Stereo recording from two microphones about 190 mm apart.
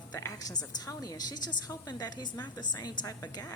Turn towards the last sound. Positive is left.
turn(degrees=20)  # may be behind; listen again after turning